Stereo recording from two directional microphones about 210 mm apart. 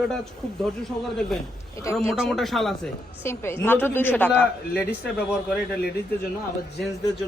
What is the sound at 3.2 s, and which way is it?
Speech, 10° left (ahead or behind).